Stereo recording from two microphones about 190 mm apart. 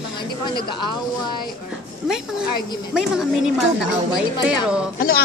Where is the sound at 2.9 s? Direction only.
5° right (ahead or behind).